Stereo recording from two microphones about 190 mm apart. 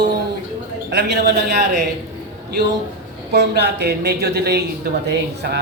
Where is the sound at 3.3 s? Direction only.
60° right (ahead or behind).